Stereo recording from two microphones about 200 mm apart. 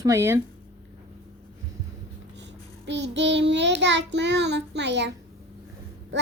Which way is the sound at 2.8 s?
65° right (ahead or behind).